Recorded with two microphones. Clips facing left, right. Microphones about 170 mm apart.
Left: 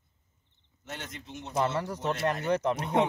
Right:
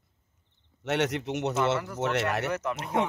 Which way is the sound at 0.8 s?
80° right.